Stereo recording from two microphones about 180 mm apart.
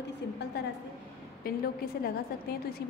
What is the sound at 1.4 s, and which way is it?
Speech, 55° left (ahead or behind).